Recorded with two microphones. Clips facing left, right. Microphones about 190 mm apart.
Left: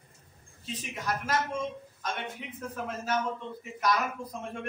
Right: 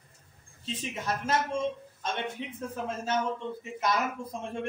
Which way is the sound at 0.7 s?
25° right (ahead or behind).